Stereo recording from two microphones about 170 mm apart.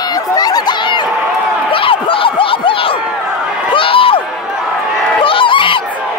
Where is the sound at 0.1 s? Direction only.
25° left (ahead or behind).